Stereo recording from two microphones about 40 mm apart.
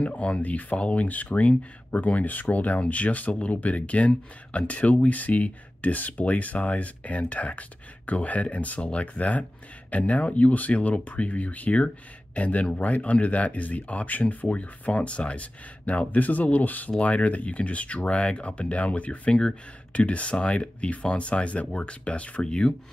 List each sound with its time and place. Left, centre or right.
0.0 s speech: left
16.1 s speech: left